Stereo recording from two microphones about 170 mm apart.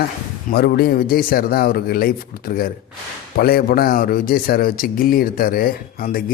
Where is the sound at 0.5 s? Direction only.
65° left (ahead or behind).